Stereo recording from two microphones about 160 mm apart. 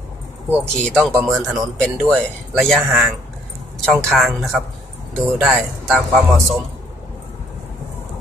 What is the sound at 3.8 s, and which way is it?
A man's voice, centre (ahead or behind).